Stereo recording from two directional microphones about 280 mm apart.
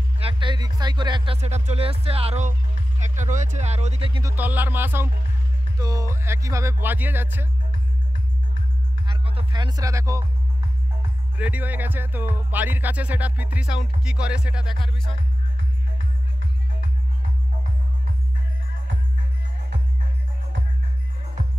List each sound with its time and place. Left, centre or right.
0.2 s speech: centre
4.4 s speech: centre
9.0 s music: centre
11.3 s speech: centre